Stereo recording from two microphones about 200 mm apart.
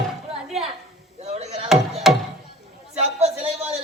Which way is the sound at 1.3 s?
30° right (ahead or behind).